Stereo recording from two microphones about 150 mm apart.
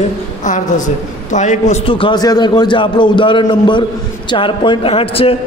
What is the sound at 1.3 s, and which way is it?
Speech, 50° left (ahead or behind).